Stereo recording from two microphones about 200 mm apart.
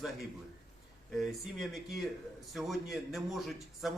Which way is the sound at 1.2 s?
Centre (ahead or behind).